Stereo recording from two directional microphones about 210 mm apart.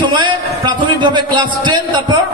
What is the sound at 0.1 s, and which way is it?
A man's voice, 20° right (ahead or behind).